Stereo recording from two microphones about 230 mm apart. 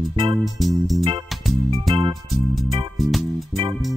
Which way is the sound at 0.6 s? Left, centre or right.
Centre.